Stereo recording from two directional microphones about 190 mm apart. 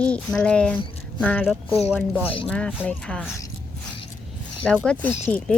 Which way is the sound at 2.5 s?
5° left (ahead or behind).